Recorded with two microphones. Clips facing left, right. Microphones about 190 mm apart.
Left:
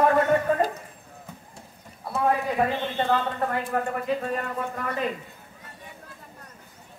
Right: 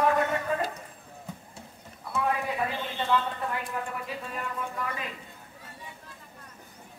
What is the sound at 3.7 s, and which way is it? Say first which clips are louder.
Speech: left 8 dB; 50° left (ahead or behind).